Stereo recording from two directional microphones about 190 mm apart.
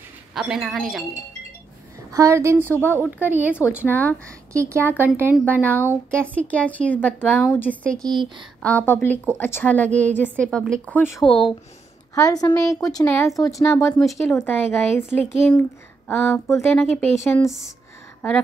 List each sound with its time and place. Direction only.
0.3 s speech: centre (ahead or behind)
2.1 s a woman's voice: 15° right (ahead or behind)
2.7 s speech: 10° left (ahead or behind)
3.0 s a woman's voice: 10° right (ahead or behind)
3.8 s speech: 10° left (ahead or behind)
4.5 s a woman's voice: 15° right (ahead or behind)
5.6 s a woman's voice: 10° left (ahead or behind)
13.9 s speech: centre (ahead or behind)